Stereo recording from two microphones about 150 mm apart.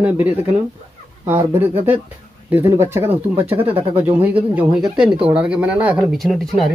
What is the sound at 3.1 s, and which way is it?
Speech, 40° right (ahead or behind).